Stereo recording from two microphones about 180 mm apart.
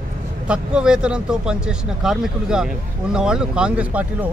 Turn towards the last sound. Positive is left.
turn(degrees=-5)  # may be behind; listen again after turning